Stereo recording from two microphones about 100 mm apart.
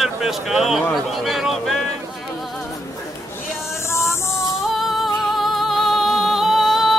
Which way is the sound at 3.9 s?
25° left (ahead or behind).